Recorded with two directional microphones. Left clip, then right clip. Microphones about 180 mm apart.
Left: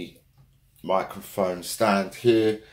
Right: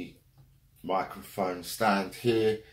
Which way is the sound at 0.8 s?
45° left (ahead or behind).